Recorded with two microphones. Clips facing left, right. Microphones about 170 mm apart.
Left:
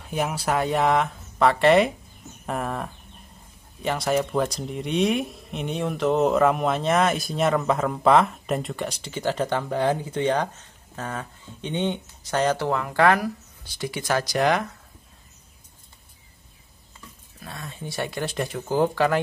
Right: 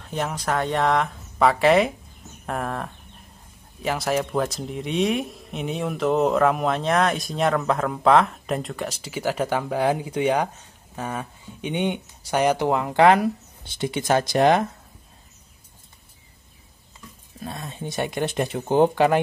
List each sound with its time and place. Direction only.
0.0 s speech: 10° left (ahead or behind); by 14.7 s 25° right (ahead or behind)
17.4 s speech: 20° right (ahead or behind)